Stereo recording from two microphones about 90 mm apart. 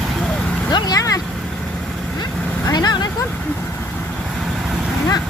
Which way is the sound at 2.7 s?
50° left (ahead or behind).